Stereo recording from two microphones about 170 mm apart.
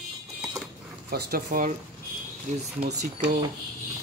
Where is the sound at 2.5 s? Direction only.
45° right (ahead or behind).